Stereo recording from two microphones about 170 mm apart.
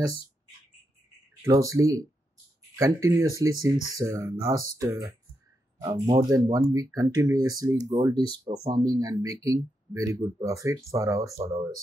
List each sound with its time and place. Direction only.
1.4 s speech: 20° right (ahead or behind)